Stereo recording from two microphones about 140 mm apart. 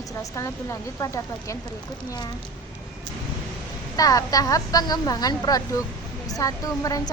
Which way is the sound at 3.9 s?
25° left (ahead or behind).